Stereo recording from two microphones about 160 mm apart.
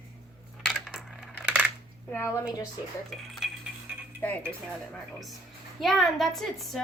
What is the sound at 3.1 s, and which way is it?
Speech, centre (ahead or behind).